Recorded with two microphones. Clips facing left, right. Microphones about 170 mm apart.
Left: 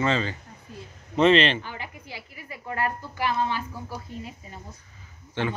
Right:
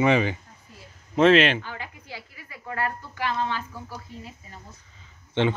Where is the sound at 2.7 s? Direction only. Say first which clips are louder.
Left 1 dB; 15° left (ahead or behind).